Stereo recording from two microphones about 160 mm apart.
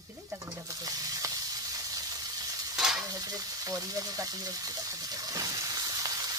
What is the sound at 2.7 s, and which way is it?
Stir, 5° right (ahead or behind).